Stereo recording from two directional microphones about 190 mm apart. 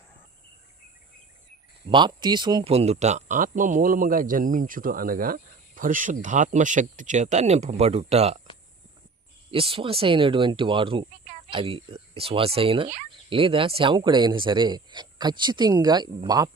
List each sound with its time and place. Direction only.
1.9 s speech: 25° right (ahead or behind)
9.5 s speech: 30° right (ahead or behind)